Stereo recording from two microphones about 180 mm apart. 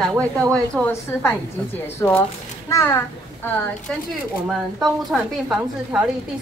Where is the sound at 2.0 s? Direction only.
20° left (ahead or behind).